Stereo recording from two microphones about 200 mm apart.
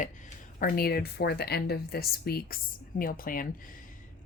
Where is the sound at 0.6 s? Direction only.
50° left (ahead or behind).